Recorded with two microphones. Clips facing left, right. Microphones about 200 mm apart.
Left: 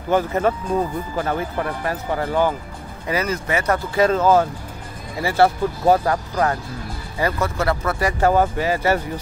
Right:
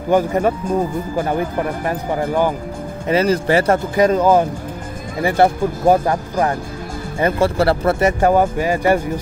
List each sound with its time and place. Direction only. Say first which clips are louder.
0.1 s speech: right 3 dB; 15° right (ahead or behind)
3.1 s speech: right 7 dB; 30° right (ahead or behind)
3.9 s speech: right 2 dB; 15° right (ahead or behind)